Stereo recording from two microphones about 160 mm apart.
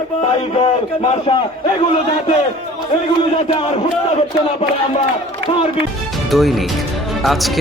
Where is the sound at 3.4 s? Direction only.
40° left (ahead or behind).